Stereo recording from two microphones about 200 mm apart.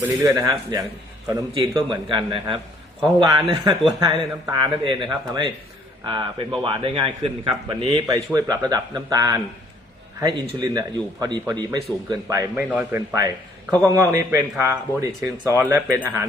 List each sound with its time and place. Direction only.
0.0 s a man's voice: 15° right (ahead or behind)
7.8 s speech: 35° left (ahead or behind)
8.0 s a man's voice: 15° right (ahead or behind)